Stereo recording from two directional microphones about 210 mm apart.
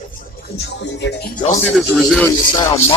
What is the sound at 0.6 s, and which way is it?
Speech, 55° left (ahead or behind).